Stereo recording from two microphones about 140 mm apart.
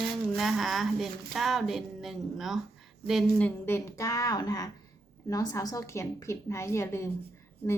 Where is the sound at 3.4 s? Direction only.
15° left (ahead or behind).